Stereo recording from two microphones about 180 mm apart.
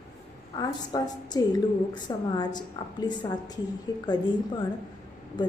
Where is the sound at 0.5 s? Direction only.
20° left (ahead or behind).